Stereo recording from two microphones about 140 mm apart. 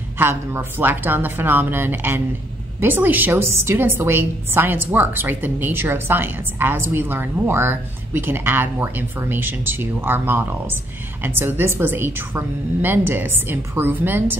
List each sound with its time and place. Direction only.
0.2 s a woman's voice: 15° right (ahead or behind)